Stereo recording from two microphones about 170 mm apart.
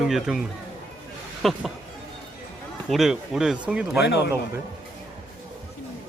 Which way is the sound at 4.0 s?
85° left.